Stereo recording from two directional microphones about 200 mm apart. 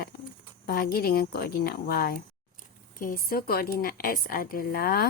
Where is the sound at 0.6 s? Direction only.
50° left (ahead or behind).